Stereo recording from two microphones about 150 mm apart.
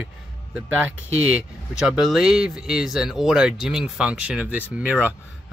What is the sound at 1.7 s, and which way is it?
Speech, 5° right (ahead or behind).